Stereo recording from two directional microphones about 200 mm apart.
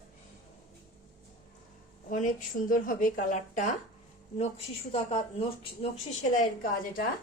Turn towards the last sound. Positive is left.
turn(degrees=40)  # may be behind; listen again after turning